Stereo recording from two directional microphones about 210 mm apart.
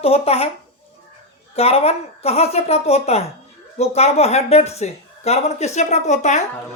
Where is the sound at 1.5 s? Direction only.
30° left (ahead or behind).